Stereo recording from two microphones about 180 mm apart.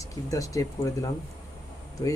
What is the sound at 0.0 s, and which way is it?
A man's voice, 20° left (ahead or behind).